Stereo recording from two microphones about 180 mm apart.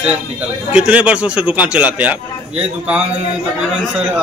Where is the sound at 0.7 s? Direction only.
5° right (ahead or behind).